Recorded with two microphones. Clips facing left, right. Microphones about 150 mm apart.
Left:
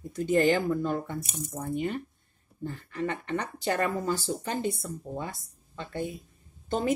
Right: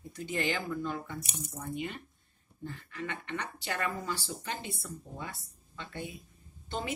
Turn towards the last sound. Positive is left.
turn(degrees=45)  # may be behind; listen again after turning